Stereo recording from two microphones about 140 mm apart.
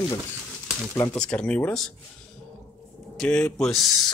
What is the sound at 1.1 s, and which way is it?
Speech, 5° left (ahead or behind).